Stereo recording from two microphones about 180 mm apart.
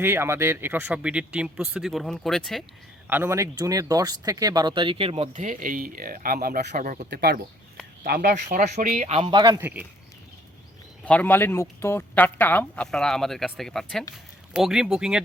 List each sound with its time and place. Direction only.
0.0 s speech: 15° right (ahead or behind)
3.1 s speech: 15° right (ahead or behind); by 6.8 s 60° right (ahead or behind)
6.8 s speech: 45° right (ahead or behind)
7.1 s speech: 65° right (ahead or behind); by 9.6 s 25° right (ahead or behind)
9.6 s speech: 10° right (ahead or behind)
11.0 s speech: 10° left (ahead or behind)